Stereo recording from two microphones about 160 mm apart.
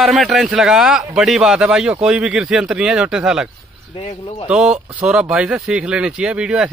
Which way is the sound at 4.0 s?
35° left (ahead or behind).